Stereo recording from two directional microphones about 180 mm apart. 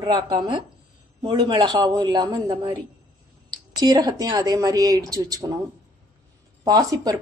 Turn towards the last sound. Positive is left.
turn(degrees=-20)  # may be behind; listen again after turning